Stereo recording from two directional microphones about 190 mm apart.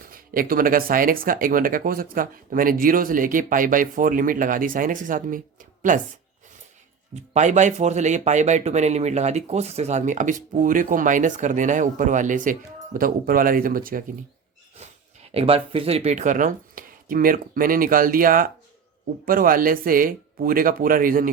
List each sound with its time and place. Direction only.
0.0 s speech: 50° right (ahead or behind)
7.3 s speech: 40° right (ahead or behind)
14.8 s speech: 30° right (ahead or behind); by 21.2 s 45° right (ahead or behind)